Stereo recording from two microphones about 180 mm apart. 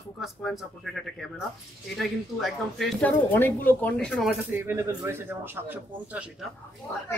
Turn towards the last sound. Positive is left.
turn(degrees=25)  # may be behind; listen again after turning